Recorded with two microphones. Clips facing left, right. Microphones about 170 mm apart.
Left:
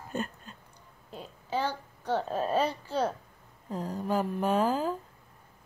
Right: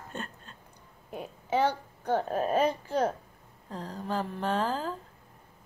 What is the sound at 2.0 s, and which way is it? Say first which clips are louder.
Speech: right 2 dB; 50° right (ahead or behind).